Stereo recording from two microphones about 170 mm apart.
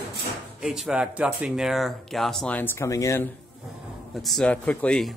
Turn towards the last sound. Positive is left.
turn(degrees=5)  # may be behind; listen again after turning